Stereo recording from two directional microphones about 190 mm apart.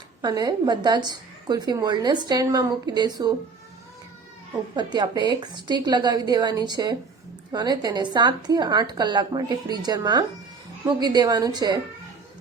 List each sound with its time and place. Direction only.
0.2 s a woman's voice: 20° right (ahead or behind)
4.7 s a woman's voice: 25° right (ahead or behind)